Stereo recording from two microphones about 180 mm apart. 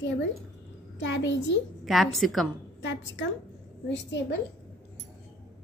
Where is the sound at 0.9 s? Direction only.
90° left.